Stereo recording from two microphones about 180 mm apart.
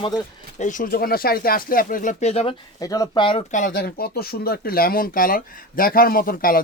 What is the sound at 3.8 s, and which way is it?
Speech, 60° left (ahead or behind).